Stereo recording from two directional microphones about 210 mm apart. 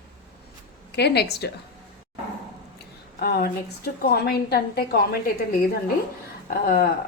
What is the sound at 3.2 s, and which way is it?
A woman's voice, 50° left (ahead or behind).